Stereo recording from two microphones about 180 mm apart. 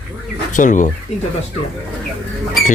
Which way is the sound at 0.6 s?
45° left (ahead or behind).